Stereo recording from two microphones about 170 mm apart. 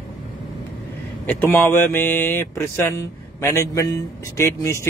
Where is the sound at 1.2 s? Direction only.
10° left (ahead or behind).